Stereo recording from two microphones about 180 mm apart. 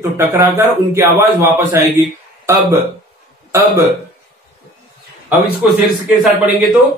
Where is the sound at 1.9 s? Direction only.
15° right (ahead or behind).